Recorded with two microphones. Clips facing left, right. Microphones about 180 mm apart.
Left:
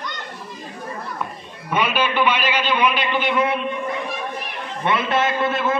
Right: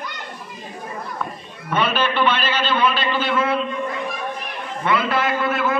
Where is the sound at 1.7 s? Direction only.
10° left (ahead or behind).